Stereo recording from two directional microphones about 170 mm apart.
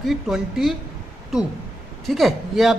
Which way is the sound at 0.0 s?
Centre (ahead or behind).